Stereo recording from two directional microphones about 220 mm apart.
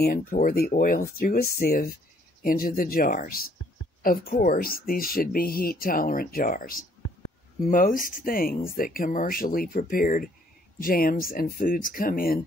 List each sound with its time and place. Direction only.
0.0 s speech: 40° left (ahead or behind)